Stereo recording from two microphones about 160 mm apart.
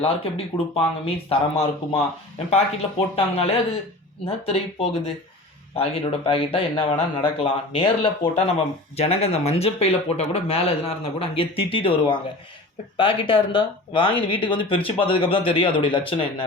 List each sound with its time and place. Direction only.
0.0 s speech: 35° left (ahead or behind)
3.2 s speech: 40° left (ahead or behind)